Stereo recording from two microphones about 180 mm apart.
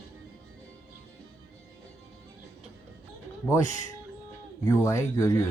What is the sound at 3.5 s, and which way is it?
Speech, 20° left (ahead or behind).